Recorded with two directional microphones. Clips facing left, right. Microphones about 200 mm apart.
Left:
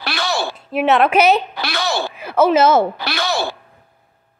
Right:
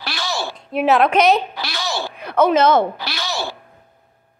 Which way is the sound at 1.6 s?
60° left (ahead or behind).